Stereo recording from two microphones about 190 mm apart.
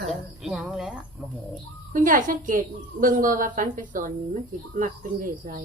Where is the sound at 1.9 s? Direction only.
45° right (ahead or behind).